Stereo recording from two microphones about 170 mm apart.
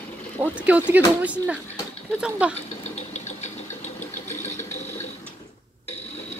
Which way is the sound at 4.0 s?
15° left (ahead or behind).